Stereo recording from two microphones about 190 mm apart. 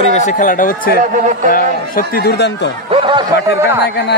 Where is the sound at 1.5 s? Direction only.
50° left (ahead or behind).